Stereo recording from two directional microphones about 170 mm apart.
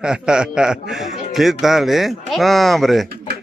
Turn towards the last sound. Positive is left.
turn(degrees=0)  # may be behind; listen again after turning